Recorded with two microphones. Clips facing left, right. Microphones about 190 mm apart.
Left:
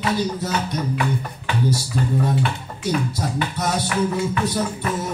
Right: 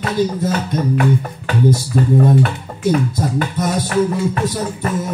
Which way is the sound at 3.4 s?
45° right (ahead or behind).